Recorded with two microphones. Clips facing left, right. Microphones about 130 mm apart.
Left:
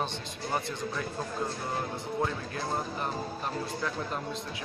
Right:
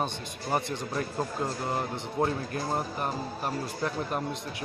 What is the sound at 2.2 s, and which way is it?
Speech, 35° right (ahead or behind).